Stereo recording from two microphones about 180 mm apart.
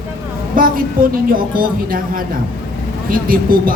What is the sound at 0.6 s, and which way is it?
A man's voice, 50° right (ahead or behind).